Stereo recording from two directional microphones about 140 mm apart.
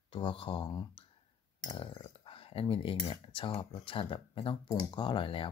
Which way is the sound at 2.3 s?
40° left (ahead or behind).